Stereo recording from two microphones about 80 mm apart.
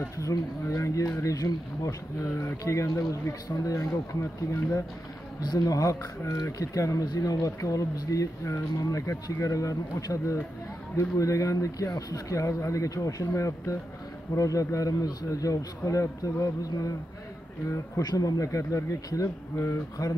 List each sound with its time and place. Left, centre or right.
0.0 s speech: left
5.4 s speech: left
18.0 s speech: left